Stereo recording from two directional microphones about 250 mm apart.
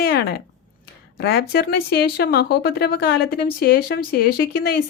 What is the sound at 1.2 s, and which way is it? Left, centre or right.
Speech, left.